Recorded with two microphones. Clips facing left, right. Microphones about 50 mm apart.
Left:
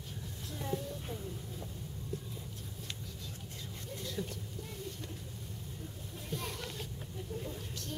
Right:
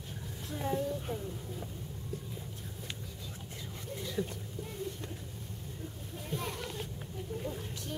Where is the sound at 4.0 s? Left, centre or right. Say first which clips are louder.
Right 4 dB; centre.